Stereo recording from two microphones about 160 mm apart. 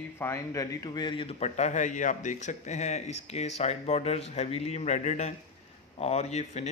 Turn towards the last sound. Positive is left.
turn(degrees=45)  # may be behind; listen again after turning